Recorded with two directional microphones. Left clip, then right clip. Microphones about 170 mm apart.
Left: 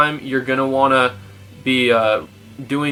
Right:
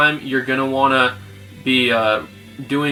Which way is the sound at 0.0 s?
10° left (ahead or behind).